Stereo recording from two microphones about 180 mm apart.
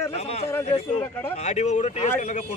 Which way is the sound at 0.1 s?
35° left (ahead or behind).